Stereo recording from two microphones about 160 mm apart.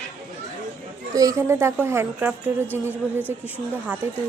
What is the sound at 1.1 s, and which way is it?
Speech, 20° right (ahead or behind).